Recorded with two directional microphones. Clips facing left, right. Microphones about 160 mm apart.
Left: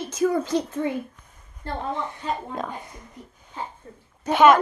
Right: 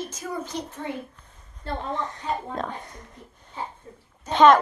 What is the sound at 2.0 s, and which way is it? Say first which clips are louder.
Speech: even; 5° left (ahead or behind).